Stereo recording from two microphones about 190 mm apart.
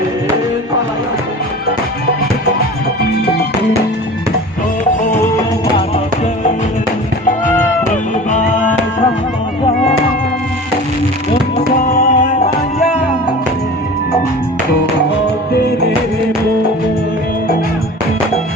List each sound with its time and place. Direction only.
8.3 s music: 40° left (ahead or behind)
11.8 s music: 40° left (ahead or behind)